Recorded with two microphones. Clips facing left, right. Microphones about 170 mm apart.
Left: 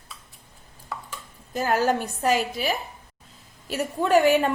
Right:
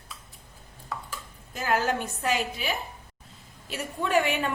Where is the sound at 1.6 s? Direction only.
40° left (ahead or behind).